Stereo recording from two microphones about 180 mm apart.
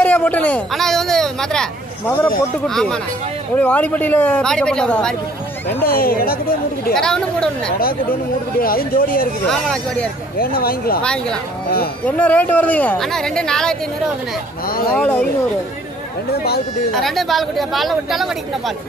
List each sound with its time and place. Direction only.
0.0 s speech: 10° left (ahead or behind)
5.8 s a woman's voice: 55° left (ahead or behind)
7.0 s speech: 5° left (ahead or behind)
7.8 s speech: 55° left (ahead or behind)
9.5 s speech: 5° left (ahead or behind)
10.4 s a woman's voice: 55° left (ahead or behind)
11.0 s speech: 5° left (ahead or behind)
14.7 s a woman's voice: 55° left (ahead or behind)
15.0 s speech: 5° left (ahead or behind)
16.9 s speech: centre (ahead or behind)